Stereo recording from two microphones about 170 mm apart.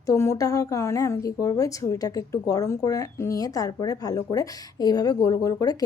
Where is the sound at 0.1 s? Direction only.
15° left (ahead or behind).